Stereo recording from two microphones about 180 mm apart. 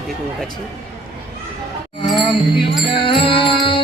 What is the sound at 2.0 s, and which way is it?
Music, 25° left (ahead or behind).